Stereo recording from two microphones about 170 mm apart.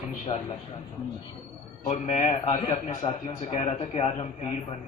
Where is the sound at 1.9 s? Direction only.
40° left (ahead or behind).